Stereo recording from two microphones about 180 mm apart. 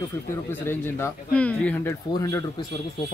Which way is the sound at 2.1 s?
20° left (ahead or behind).